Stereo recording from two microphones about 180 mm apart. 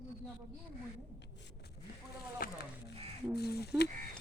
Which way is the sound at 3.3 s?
65° left (ahead or behind).